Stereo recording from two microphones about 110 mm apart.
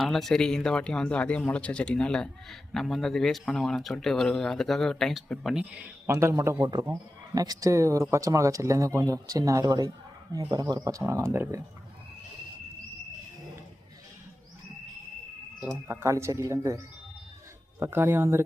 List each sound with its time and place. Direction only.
0.0 s speech: centre (ahead or behind)
5.5 s speech: 10° right (ahead or behind)
6.1 s speech: 25° right (ahead or behind)
11.0 s speech: 25° right (ahead or behind)
15.6 s speech: 20° right (ahead or behind)
17.7 s speech: 20° right (ahead or behind)